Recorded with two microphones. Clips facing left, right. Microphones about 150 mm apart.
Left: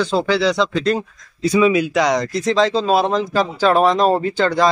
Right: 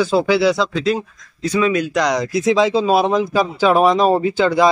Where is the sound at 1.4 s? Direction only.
10° left (ahead or behind).